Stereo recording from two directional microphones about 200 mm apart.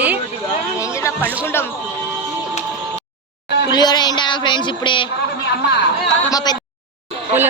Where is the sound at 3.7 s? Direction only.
20° left (ahead or behind).